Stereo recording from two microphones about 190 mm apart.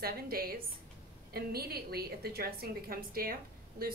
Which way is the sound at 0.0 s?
50° right (ahead or behind).